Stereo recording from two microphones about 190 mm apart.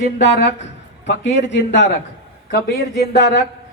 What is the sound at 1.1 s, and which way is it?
Speech, 65° left (ahead or behind).